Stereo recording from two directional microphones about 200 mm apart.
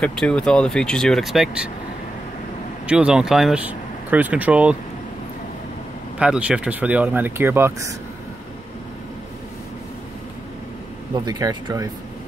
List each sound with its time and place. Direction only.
0.0 s speech: 5° left (ahead or behind)
2.9 s speech: 5° right (ahead or behind)
6.1 s speech: 5° right (ahead or behind)
11.1 s speech: 20° right (ahead or behind)